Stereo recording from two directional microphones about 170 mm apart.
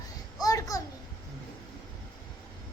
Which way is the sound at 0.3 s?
20° left (ahead or behind).